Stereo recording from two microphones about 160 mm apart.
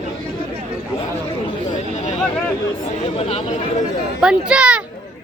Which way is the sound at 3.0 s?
40° left (ahead or behind).